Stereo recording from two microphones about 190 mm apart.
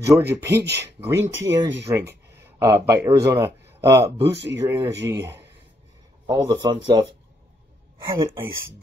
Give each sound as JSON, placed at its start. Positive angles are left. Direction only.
{"t": 0.0, "sound": "speech", "side_deg": -15}
{"t": 8.1, "sound": "speech", "side_deg": -25}